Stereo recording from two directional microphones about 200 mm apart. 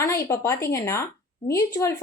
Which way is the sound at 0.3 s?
15° left (ahead or behind).